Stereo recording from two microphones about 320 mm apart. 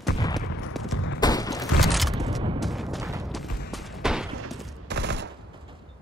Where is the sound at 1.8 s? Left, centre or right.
Centre.